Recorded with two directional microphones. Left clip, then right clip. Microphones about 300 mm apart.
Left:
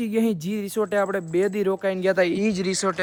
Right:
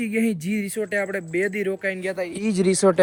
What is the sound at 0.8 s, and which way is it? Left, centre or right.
Speech, left.